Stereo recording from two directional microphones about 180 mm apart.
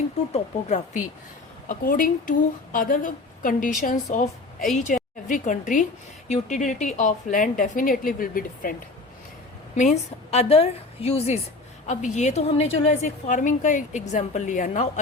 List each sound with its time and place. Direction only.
0.3 s a woman's voice: 40° left (ahead or behind)
9.7 s a woman's voice: 40° left (ahead or behind)